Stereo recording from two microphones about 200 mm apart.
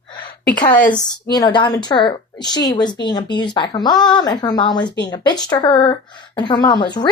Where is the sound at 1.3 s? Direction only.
20° left (ahead or behind).